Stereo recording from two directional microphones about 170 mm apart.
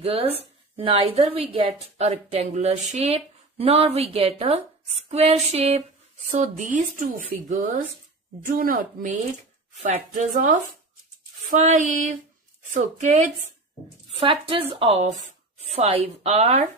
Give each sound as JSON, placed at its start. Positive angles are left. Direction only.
{"t": 0.0, "sound": "a woman's voice", "side_deg": -35}
{"t": 9.8, "sound": "speech", "side_deg": -45}
{"t": 11.6, "sound": "speech", "side_deg": -45}
{"t": 14.0, "sound": "a woman's voice", "side_deg": -30}